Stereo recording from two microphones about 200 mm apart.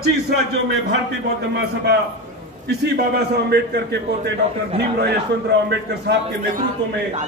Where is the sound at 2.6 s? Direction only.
55° right (ahead or behind).